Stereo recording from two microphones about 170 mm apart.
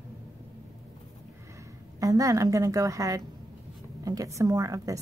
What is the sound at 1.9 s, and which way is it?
A woman's voice, 20° right (ahead or behind).